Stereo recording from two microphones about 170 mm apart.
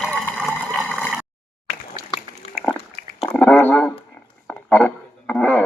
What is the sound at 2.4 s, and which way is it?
Dog, 35° left (ahead or behind).